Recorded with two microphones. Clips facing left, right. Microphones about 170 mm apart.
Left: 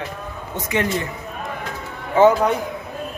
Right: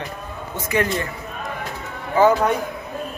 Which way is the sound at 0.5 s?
20° left (ahead or behind).